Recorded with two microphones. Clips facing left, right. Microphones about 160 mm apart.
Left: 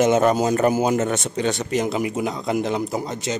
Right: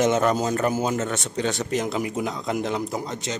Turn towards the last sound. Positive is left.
turn(degrees=5)  # may be behind; listen again after turning